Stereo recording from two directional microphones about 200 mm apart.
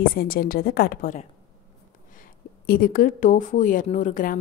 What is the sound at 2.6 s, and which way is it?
Speech, 45° left (ahead or behind).